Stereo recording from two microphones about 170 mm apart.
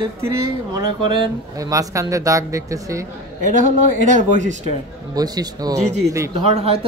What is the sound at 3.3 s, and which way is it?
Speech, 50° right (ahead or behind).